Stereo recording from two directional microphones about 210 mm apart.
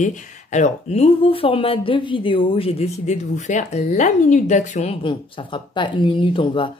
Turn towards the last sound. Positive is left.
turn(degrees=25)  # may be behind; listen again after turning